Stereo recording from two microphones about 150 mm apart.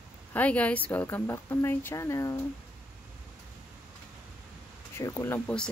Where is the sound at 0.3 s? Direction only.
10° left (ahead or behind).